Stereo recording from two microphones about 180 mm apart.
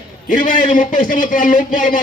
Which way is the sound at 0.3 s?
45° left (ahead or behind).